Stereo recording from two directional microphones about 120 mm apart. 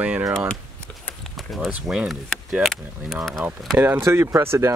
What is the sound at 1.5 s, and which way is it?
Speech, 5° right (ahead or behind).